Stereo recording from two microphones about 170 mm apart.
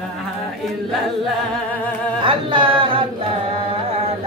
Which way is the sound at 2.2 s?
30° right (ahead or behind).